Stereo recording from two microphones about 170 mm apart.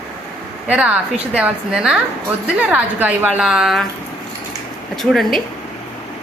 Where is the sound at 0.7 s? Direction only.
5° right (ahead or behind).